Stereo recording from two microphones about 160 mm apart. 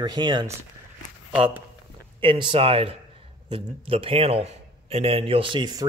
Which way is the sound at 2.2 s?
30° right (ahead or behind).